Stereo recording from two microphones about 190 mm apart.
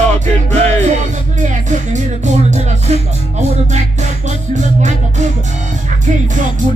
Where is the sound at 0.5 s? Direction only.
35° right (ahead or behind).